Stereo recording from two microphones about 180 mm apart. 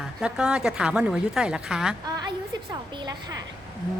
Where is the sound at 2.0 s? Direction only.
20° right (ahead or behind).